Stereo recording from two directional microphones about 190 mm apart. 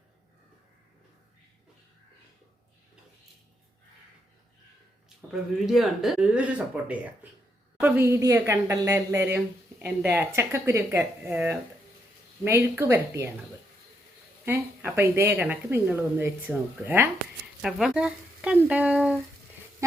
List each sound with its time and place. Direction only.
5.0 s speech: centre (ahead or behind)
14.4 s speech: 10° right (ahead or behind)